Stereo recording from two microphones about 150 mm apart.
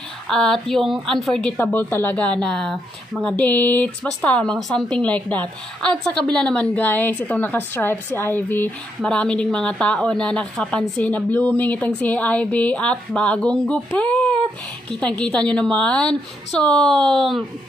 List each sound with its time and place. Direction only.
0.3 s a woman's voice: 5° left (ahead or behind)